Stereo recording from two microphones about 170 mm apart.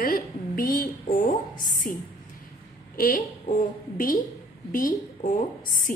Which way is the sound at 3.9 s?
55° left (ahead or behind).